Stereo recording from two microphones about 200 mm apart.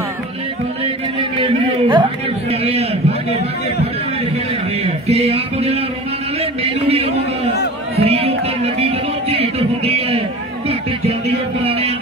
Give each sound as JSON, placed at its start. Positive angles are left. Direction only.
{"t": 1.4, "sound": "a sound", "side_deg": -25}
{"t": 4.8, "sound": "music", "side_deg": -30}
{"t": 6.6, "sound": "a man's voice", "side_deg": -30}
{"t": 7.9, "sound": "music", "side_deg": -30}